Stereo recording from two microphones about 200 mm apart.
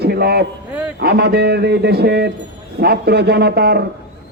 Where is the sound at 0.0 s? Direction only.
55° right (ahead or behind).